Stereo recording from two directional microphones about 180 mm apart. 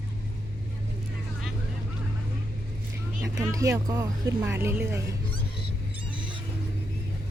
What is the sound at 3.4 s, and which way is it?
Speech, 20° right (ahead or behind).